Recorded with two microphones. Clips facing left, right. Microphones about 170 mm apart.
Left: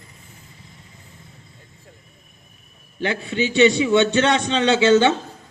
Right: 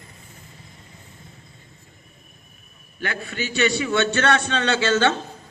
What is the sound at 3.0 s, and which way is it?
A man's voice, 25° left (ahead or behind).